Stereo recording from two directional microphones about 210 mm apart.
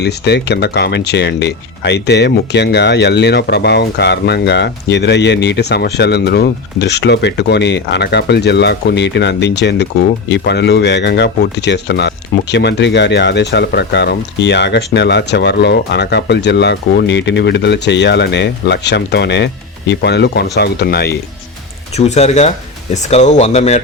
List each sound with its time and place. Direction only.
0.0 s speech: 50° left (ahead or behind)
21.9 s speech: 30° left (ahead or behind)